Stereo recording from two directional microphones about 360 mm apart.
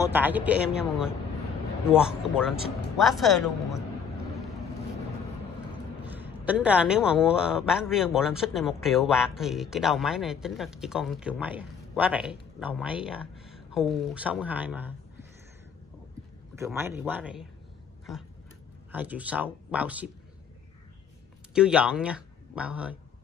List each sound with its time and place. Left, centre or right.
0.0 s a man's voice: centre
6.0 s a man's voice: centre
16.5 s speech: centre
18.9 s a man's voice: centre
21.5 s speech: centre